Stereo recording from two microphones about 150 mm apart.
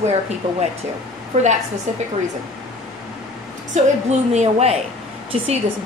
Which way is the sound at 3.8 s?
50° right (ahead or behind).